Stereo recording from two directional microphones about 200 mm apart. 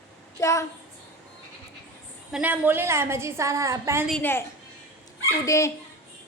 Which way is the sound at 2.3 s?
10° right (ahead or behind).